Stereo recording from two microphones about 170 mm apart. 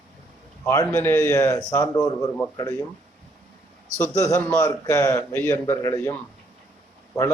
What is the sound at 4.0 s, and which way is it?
A man's voice, 15° left (ahead or behind).